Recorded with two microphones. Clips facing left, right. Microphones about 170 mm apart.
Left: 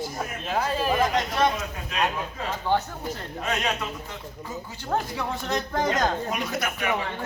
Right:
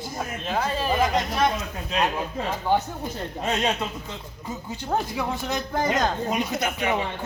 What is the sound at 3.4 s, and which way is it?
Speech, 25° right (ahead or behind).